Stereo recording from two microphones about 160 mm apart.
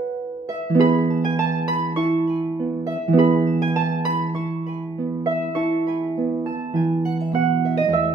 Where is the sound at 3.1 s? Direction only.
30° right (ahead or behind).